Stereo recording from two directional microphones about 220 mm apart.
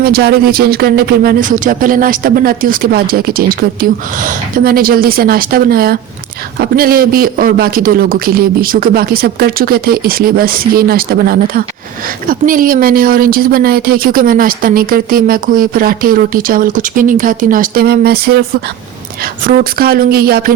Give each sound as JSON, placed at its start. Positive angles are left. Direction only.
{"t": 0.0, "sound": "speech", "side_deg": -45}